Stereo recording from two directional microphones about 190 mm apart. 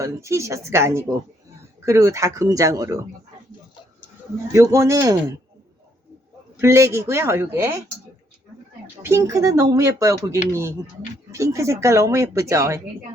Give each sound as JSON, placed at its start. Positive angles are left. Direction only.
{"t": 0.0, "sound": "speech", "side_deg": -15}
{"t": 4.5, "sound": "speech", "side_deg": -15}
{"t": 6.6, "sound": "speech", "side_deg": -15}
{"t": 9.0, "sound": "speech", "side_deg": -15}